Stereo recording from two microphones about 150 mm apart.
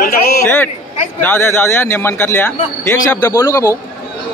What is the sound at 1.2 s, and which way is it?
A man's voice, 15° left (ahead or behind).